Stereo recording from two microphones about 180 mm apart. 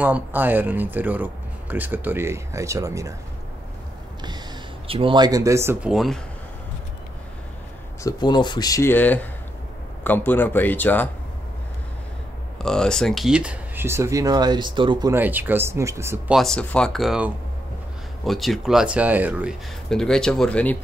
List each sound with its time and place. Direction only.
0.0 s speech: 10° right (ahead or behind)
4.8 s speech: 30° right (ahead or behind); by 6.1 s centre (ahead or behind)
8.0 s speech: 25° left (ahead or behind)
12.5 s speech: 5° left (ahead or behind); by 15.1 s 25° right (ahead or behind)
15.1 s speech: 10° right (ahead or behind)
16.3 s speech: 5° left (ahead or behind)
19.9 s speech: 5° left (ahead or behind)